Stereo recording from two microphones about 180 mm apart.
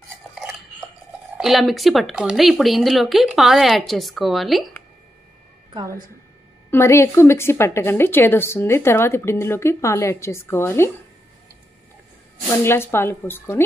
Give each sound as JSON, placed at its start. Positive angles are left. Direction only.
{"t": 0.3, "sound": "cutlery", "side_deg": 0}
{"t": 1.4, "sound": "speech", "side_deg": 0}
{"t": 5.7, "sound": "a woman's voice", "side_deg": -20}
{"t": 6.7, "sound": "speech", "side_deg": 15}
{"t": 12.6, "sound": "speech", "side_deg": 15}